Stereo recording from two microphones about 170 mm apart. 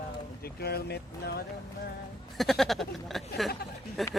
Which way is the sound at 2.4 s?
Centre (ahead or behind).